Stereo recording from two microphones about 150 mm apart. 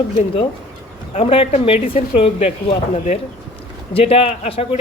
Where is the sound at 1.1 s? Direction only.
40° left (ahead or behind).